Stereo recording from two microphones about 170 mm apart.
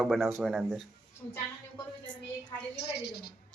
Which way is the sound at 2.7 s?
75° left (ahead or behind).